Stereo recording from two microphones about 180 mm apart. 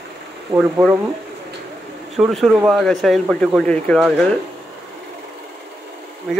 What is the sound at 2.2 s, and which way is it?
Speech, centre (ahead or behind).